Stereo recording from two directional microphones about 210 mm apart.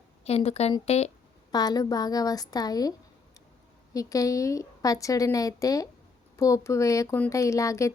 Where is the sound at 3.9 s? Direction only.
15° left (ahead or behind).